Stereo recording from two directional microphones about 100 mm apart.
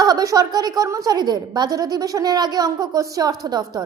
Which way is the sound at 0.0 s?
40° right (ahead or behind).